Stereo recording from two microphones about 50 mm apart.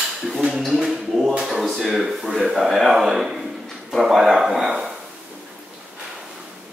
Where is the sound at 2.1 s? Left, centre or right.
Centre.